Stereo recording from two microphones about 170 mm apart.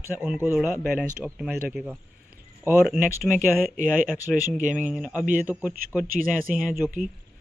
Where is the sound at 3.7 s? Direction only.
50° right (ahead or behind).